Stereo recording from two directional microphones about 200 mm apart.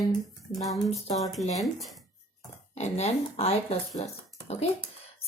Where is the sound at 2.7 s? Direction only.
35° left (ahead or behind).